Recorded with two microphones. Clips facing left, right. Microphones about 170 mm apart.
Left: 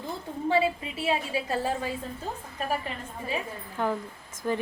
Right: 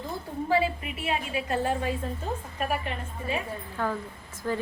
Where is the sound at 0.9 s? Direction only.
30° left (ahead or behind).